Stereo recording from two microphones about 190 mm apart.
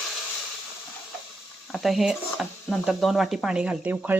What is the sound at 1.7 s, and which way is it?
Speech, centre (ahead or behind).